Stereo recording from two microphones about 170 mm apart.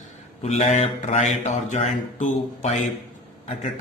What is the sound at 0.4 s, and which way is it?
A man's voice, 45° left (ahead or behind).